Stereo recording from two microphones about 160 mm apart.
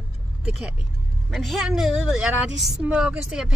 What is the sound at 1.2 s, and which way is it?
Speech, centre (ahead or behind).